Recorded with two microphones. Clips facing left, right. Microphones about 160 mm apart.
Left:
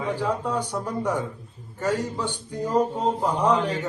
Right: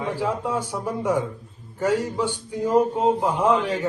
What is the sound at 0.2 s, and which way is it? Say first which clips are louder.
Speech: right 1 dB; 5° right (ahead or behind).